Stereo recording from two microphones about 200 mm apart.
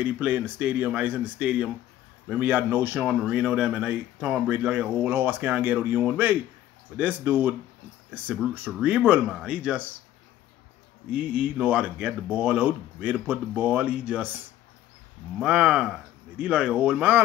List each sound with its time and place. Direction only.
0.0 s speech: 10° right (ahead or behind)
11.1 s speech: 5° right (ahead or behind)